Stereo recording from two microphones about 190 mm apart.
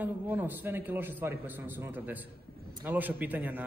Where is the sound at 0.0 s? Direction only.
10° right (ahead or behind).